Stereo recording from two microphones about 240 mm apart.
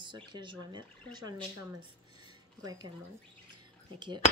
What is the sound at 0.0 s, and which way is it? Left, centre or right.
Speech, centre.